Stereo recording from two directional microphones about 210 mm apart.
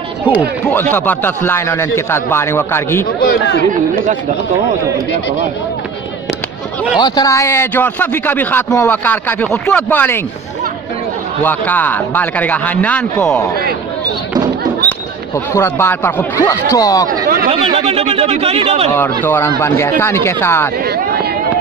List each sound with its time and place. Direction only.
0.9 s speech: 10° left (ahead or behind)
3.2 s speech: 55° left (ahead or behind)
7.0 s speech: 15° left (ahead or behind)
11.4 s speech: 10° left (ahead or behind)
14.9 s speech: 15° left (ahead or behind)
17.5 s speech: 30° right (ahead or behind)
18.9 s speech: 10° left (ahead or behind)
20.8 s speech: 50° right (ahead or behind)